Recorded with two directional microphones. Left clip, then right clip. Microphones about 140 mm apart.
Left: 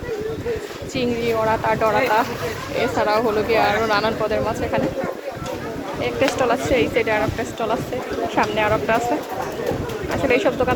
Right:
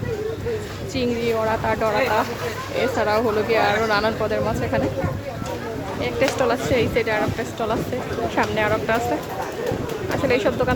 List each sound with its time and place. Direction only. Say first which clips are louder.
0.9 s speech: left 1 dB; 20° right (ahead or behind)
6.4 s speech: left 2 dB; 25° right (ahead or behind)
10.2 s speech: left 2 dB; 25° right (ahead or behind)